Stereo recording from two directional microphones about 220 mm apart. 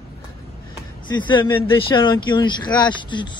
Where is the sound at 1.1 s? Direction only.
20° left (ahead or behind).